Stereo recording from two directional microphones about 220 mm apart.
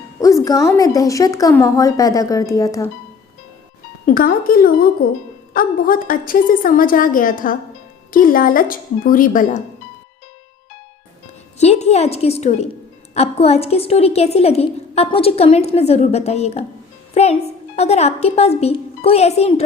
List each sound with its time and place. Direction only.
0.2 s speech: 15° left (ahead or behind)
4.0 s a woman's voice: 40° left (ahead or behind)
11.5 s a woman's voice: 30° left (ahead or behind)